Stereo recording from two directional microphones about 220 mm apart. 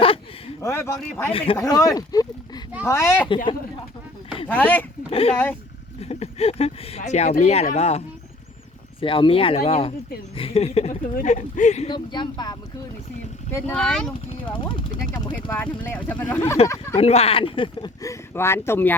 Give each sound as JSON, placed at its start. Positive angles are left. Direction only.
{"t": 0.6, "sound": "speech", "side_deg": 10}
{"t": 1.3, "sound": "speech", "side_deg": 25}
{"t": 1.5, "sound": "speech", "side_deg": 15}
{"t": 3.2, "sound": "speech", "side_deg": 20}
{"t": 4.4, "sound": "speech", "side_deg": 5}
{"t": 5.1, "sound": "speech", "side_deg": 25}
{"t": 11.9, "sound": "speech", "side_deg": 20}
{"t": 13.5, "sound": "speech", "side_deg": 5}
{"t": 15.1, "sound": "speech", "side_deg": 20}
{"t": 15.4, "sound": "speech", "side_deg": 5}
{"t": 17.0, "sound": "speech", "side_deg": 30}